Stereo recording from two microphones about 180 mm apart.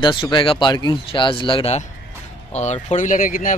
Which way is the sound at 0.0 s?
25° left (ahead or behind).